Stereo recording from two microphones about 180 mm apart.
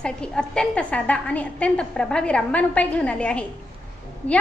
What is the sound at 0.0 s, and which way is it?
A woman's voice, 5° left (ahead or behind).